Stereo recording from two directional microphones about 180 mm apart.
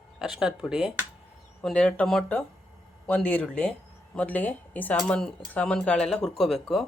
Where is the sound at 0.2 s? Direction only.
5° right (ahead or behind).